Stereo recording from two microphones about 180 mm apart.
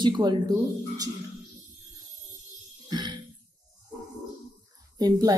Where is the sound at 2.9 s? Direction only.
25° right (ahead or behind).